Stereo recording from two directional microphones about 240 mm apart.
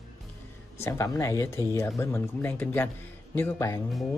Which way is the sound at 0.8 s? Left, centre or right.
Centre.